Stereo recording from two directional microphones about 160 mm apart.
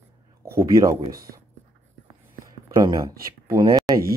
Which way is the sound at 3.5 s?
20° right (ahead or behind).